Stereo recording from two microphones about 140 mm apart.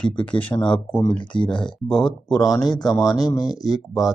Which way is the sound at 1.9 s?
5° left (ahead or behind).